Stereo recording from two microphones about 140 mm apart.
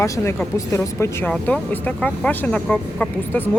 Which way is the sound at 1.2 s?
10° left (ahead or behind).